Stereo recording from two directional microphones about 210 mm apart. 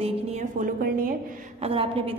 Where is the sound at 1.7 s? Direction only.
25° right (ahead or behind).